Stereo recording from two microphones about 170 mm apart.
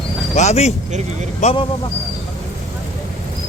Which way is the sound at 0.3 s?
40° left (ahead or behind).